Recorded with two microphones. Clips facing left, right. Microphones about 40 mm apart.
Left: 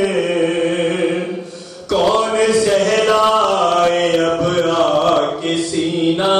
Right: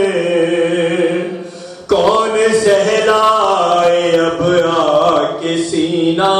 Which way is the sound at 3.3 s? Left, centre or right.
Right.